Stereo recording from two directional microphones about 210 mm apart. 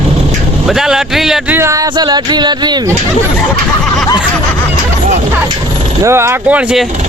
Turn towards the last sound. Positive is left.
turn(degrees=-5)  # may be behind; listen again after turning